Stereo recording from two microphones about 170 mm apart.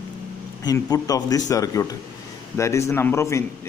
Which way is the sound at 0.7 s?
20° left (ahead or behind).